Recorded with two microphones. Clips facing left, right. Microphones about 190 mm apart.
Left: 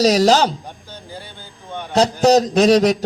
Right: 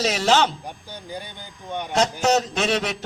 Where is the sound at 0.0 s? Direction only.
40° left (ahead or behind).